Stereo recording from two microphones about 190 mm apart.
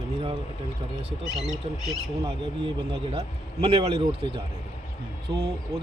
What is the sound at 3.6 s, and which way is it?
Speech, 30° right (ahead or behind).